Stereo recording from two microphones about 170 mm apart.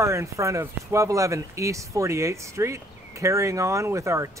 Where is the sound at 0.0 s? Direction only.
15° right (ahead or behind).